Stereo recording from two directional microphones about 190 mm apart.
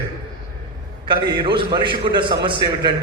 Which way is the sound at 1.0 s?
25° right (ahead or behind).